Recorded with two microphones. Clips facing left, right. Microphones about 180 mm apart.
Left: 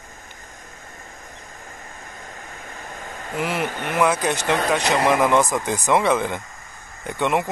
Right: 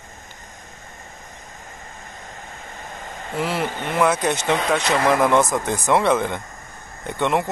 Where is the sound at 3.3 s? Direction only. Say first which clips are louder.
Right 1 dB; 10° left (ahead or behind).